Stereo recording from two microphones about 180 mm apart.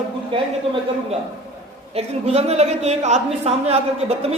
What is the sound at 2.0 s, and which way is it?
A man's voice, 35° right (ahead or behind).